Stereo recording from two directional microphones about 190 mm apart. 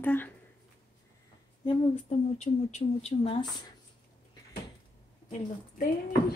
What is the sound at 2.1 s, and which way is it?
A woman's voice, 35° left (ahead or behind).